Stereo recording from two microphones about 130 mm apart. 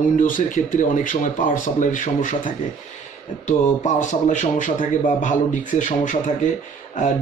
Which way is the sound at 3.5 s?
70° left (ahead or behind).